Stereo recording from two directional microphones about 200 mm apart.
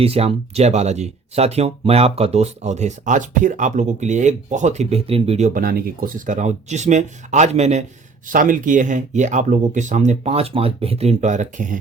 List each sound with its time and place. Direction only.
0.0 s speech: 30° right (ahead or behind)
5.5 s speech: 45° right (ahead or behind)